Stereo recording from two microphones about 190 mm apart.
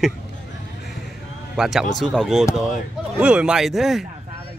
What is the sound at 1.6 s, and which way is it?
A man's voice, centre (ahead or behind).